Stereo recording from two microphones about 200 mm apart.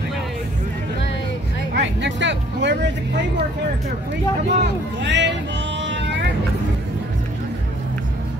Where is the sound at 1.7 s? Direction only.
60° right (ahead or behind).